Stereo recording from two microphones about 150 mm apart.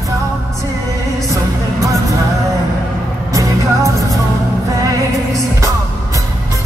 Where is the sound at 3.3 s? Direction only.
20° right (ahead or behind).